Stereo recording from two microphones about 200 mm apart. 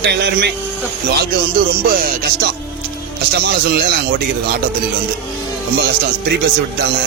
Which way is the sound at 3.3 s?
55° right (ahead or behind).